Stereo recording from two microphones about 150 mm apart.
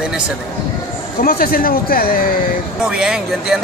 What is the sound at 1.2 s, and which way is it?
Speech, 80° left.